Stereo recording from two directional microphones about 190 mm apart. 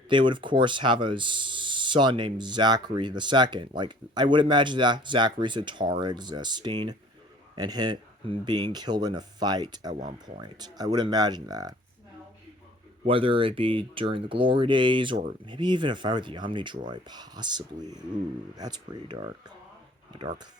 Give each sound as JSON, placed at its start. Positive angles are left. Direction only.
{"t": 0.1, "sound": "speech", "side_deg": -25}
{"t": 13.1, "sound": "speech", "side_deg": -30}